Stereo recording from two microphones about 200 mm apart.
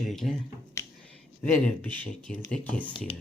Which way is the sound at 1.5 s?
10° left (ahead or behind).